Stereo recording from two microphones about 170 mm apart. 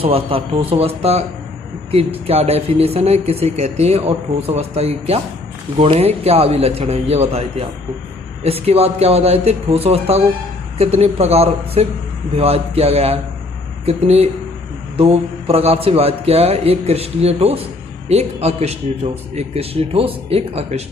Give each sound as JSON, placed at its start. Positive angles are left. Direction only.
{"t": 0.0, "sound": "speech", "side_deg": -30}
{"t": 2.2, "sound": "speech", "side_deg": -35}